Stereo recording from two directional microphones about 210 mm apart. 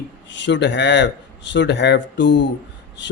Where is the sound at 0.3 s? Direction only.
55° left (ahead or behind).